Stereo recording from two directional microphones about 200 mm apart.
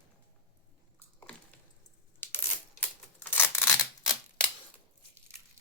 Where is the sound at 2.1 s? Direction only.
10° left (ahead or behind).